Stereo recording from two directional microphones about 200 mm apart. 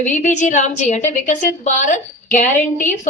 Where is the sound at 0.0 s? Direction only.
40° left (ahead or behind).